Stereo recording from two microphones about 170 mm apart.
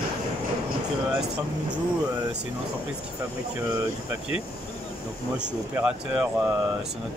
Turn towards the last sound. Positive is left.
turn(degrees=-5)  # may be behind; listen again after turning